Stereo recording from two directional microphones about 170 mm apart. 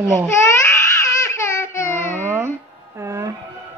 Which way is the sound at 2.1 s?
15° right (ahead or behind).